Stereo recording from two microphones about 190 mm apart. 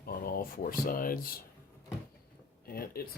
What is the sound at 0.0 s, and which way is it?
Speech, 50° left (ahead or behind).